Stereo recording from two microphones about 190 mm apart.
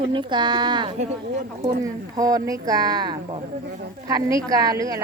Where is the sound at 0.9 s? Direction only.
35° right (ahead or behind).